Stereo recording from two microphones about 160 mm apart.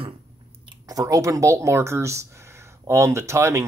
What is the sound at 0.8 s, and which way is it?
Speech, 20° right (ahead or behind).